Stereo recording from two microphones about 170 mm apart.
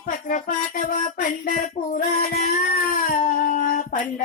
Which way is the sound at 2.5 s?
55° left (ahead or behind).